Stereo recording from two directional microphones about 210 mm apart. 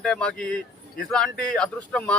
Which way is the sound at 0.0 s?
5° left (ahead or behind).